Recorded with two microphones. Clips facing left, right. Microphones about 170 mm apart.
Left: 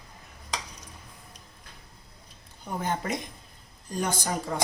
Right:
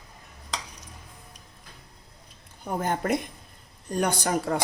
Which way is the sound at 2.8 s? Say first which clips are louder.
Right 4 dB; 55° right (ahead or behind).